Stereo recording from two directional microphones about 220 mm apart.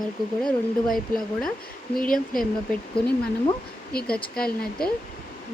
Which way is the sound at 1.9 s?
40° left (ahead or behind).